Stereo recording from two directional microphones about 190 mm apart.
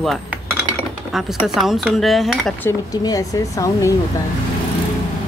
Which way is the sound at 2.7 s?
20° left (ahead or behind).